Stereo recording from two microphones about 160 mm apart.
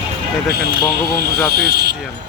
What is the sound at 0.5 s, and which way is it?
Speech, 85° right.